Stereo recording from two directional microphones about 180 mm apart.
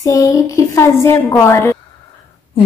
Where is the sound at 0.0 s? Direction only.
20° left (ahead or behind).